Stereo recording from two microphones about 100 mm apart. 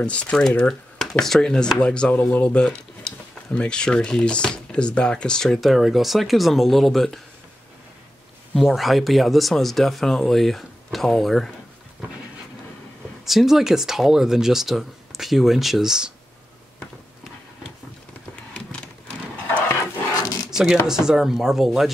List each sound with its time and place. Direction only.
0.0 s speech: 10° left (ahead or behind)
8.5 s speech: centre (ahead or behind)
13.2 s speech: 5° right (ahead or behind)
19.3 s horse: 15° left (ahead or behind)
20.8 s speech: 5° right (ahead or behind)